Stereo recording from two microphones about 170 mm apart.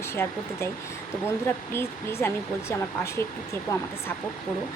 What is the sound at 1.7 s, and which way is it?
Speech, 15° left (ahead or behind).